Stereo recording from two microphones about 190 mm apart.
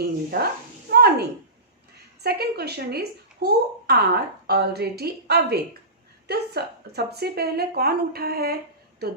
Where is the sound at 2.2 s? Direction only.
55° right (ahead or behind).